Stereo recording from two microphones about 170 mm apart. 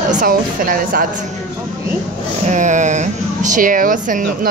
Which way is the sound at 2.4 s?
45° right (ahead or behind).